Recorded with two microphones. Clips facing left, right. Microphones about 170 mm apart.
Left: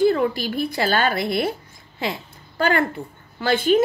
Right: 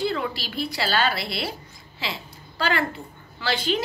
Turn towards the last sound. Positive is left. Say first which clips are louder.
# left 7 dB
turn(degrees=50)  # may be behind; listen again after turning